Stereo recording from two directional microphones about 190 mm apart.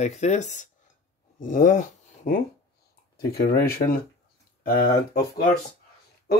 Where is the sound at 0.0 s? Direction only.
35° left (ahead or behind).